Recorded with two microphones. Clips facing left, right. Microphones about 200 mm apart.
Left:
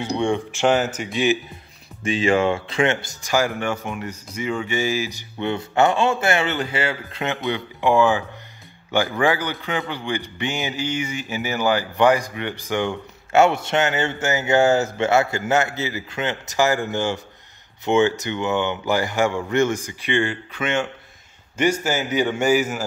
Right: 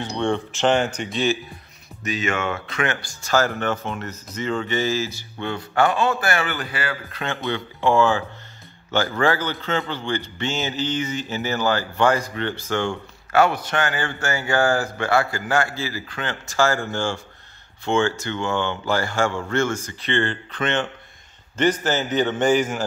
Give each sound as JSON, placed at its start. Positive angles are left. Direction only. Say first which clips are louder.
{"t": 0.0, "sound": "speech", "louder": "left 2 dB", "side_deg": 15}
{"t": 2.0, "sound": "speech", "louder": "left 6 dB", "side_deg": 30}